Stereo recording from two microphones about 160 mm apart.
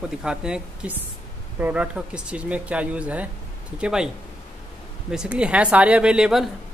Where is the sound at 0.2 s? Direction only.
5° right (ahead or behind).